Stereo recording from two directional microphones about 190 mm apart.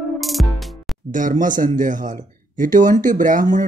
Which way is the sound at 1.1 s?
45° right (ahead or behind).